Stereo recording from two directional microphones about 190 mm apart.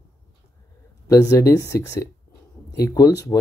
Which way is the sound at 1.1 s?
15° left (ahead or behind).